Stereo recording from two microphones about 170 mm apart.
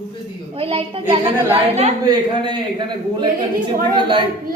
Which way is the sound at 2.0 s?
25° right (ahead or behind).